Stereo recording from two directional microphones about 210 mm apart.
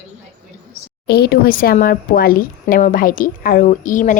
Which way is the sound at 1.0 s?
50° left (ahead or behind).